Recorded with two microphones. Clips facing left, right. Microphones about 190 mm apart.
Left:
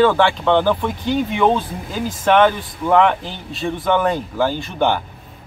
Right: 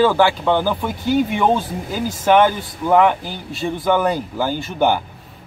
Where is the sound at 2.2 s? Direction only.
5° right (ahead or behind).